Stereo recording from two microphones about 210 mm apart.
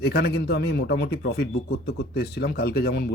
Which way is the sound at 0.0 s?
50° left (ahead or behind).